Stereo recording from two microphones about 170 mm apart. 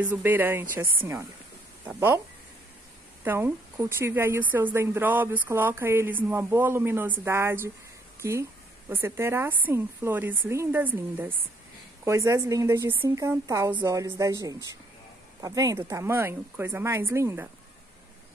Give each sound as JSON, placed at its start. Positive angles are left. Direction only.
{"t": 0.0, "sound": "a woman's voice", "side_deg": -10}
{"t": 1.9, "sound": "a woman's voice", "side_deg": -15}
{"t": 3.3, "sound": "a woman's voice", "side_deg": -10}